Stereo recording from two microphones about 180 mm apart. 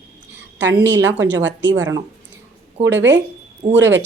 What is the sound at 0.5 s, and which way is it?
A woman's voice, 85° right.